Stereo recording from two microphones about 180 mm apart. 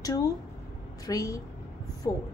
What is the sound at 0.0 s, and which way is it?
A woman's voice, 20° left (ahead or behind).